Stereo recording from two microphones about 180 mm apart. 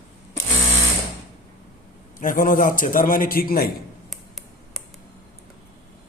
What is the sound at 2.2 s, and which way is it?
A man's voice, 50° left (ahead or behind).